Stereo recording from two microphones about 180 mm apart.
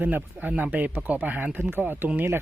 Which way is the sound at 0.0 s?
10° right (ahead or behind).